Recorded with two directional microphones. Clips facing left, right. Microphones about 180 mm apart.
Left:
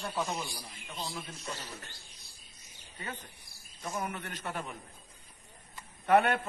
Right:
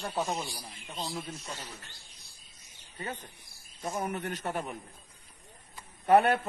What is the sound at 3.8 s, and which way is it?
Speech, 40° right (ahead or behind).